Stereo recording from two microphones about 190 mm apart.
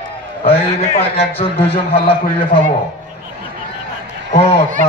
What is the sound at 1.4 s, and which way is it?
Speech, 30° left (ahead or behind).